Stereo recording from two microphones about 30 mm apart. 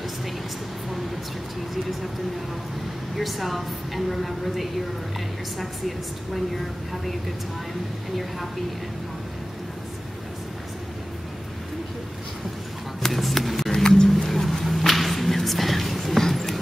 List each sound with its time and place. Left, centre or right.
3.2 s a woman's voice: centre
13.0 s a sound: centre
14.0 s music: centre